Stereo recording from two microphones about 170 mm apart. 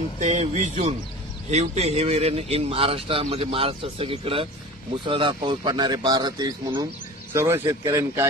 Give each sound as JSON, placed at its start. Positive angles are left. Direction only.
{"t": 0.2, "sound": "speech", "side_deg": -40}